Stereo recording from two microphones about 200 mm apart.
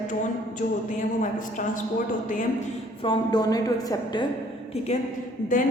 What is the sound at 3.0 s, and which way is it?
A woman's voice, 20° left (ahead or behind).